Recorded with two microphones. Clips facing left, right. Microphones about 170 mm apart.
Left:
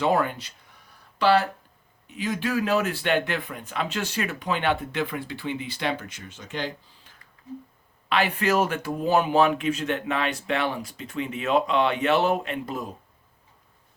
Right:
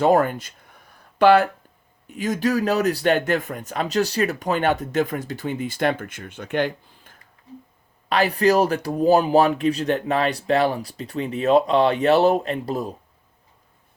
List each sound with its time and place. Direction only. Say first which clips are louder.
0.0 s speech: right 6 dB; 45° right (ahead or behind)
8.1 s speech: right 5 dB; 40° right (ahead or behind)